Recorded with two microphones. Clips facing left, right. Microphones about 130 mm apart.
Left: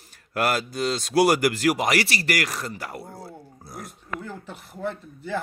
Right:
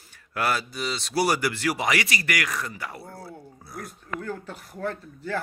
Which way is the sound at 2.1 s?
35° left (ahead or behind).